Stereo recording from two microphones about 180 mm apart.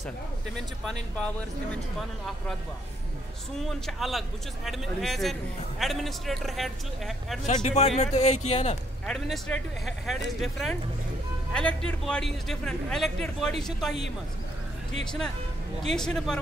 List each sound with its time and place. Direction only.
1.1 s speech: 5° left (ahead or behind)
3.5 s a man's voice: centre (ahead or behind)
7.4 s speech: 40° left (ahead or behind)
9.0 s a man's voice: 5° left (ahead or behind)
15.0 s a man's voice: 5° left (ahead or behind)